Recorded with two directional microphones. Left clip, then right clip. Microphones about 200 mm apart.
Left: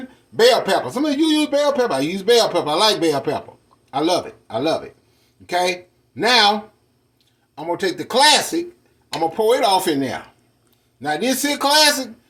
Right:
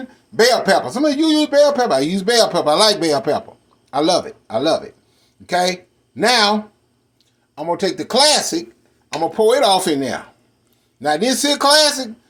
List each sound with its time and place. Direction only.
0.3 s speech: 40° right (ahead or behind)